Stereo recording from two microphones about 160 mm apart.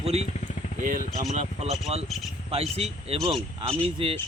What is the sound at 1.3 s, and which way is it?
Speech, 45° right (ahead or behind).